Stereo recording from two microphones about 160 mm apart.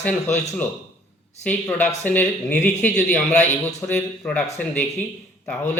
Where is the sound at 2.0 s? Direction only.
10° left (ahead or behind).